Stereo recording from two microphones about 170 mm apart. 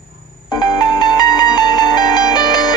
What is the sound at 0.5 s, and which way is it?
Music, 25° left (ahead or behind).